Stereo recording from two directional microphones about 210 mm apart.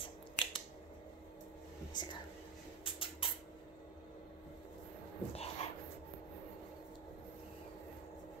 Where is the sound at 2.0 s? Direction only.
20° left (ahead or behind).